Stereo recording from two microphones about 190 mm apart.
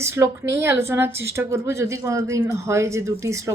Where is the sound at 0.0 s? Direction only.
15° right (ahead or behind).